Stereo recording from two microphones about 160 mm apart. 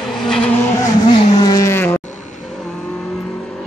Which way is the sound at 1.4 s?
25° left (ahead or behind).